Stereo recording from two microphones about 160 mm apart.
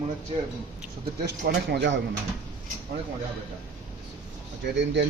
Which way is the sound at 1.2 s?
85° right.